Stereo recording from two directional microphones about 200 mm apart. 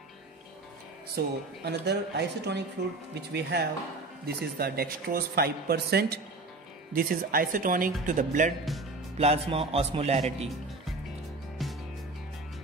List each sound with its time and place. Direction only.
1.1 s a woman's voice: 55° right (ahead or behind); by 10.5 s 30° right (ahead or behind)
11.6 s music: centre (ahead or behind)